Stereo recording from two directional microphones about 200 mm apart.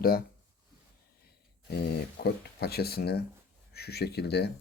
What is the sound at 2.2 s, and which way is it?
Speech, 55° left (ahead or behind).